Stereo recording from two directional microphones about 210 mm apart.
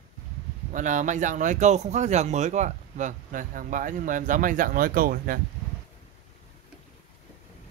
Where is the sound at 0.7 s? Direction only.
35° right (ahead or behind).